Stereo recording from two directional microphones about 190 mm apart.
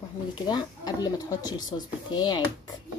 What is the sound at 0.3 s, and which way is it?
Speech, 25° left (ahead or behind).